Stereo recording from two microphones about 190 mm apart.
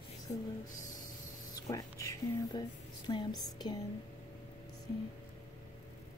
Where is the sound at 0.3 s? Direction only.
40° left (ahead or behind).